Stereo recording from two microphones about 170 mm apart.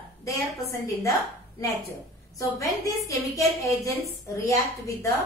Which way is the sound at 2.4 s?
20° left (ahead or behind).